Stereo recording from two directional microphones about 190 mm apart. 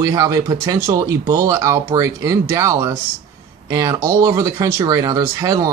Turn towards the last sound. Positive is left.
turn(degrees=-20)  # may be behind; listen again after turning